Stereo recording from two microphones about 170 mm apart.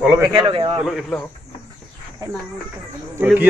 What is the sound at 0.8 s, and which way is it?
Speech, centre (ahead or behind).